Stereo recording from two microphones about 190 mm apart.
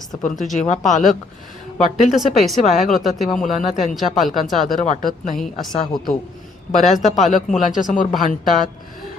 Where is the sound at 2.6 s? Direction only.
40° left (ahead or behind).